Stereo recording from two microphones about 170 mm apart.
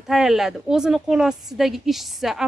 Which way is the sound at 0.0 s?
Centre (ahead or behind).